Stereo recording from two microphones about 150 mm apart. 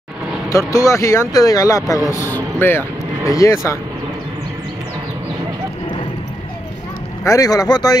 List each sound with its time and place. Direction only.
0.5 s speech: 20° left (ahead or behind)
7.2 s speech: 25° left (ahead or behind)